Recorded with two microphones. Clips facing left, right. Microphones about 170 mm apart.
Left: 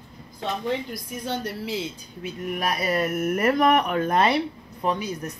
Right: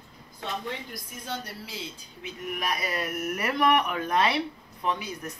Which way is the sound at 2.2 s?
45° left (ahead or behind).